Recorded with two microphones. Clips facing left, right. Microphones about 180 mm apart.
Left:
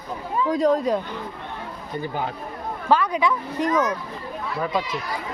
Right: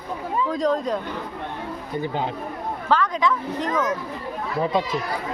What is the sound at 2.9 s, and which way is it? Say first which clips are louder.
Speech: left 1 dB; 10° left (ahead or behind).